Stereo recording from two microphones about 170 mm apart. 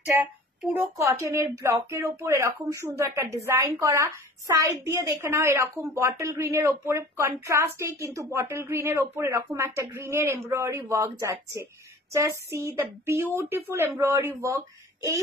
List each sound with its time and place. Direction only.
0.0 s speech: 10° right (ahead or behind)